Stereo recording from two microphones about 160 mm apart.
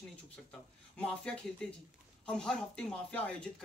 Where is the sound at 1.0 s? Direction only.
5° left (ahead or behind).